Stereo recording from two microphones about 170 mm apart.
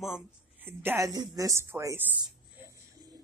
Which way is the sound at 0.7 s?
15° right (ahead or behind).